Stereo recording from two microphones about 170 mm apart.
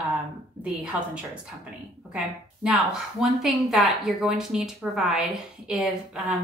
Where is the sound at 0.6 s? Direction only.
5° right (ahead or behind).